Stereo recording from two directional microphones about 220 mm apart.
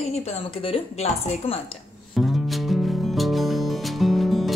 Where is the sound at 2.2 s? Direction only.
Centre (ahead or behind).